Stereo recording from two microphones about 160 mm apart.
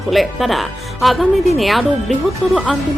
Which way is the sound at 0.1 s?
Centre (ahead or behind).